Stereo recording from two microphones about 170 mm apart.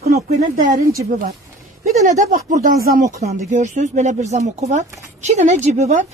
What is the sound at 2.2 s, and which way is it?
Speech, 45° right (ahead or behind).